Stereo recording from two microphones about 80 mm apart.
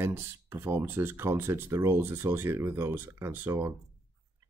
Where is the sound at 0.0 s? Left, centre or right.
Right.